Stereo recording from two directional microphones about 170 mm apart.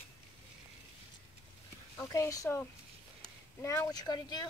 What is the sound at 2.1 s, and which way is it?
Speech, 20° left (ahead or behind).